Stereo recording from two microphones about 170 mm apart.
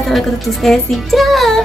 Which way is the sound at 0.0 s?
Centre (ahead or behind).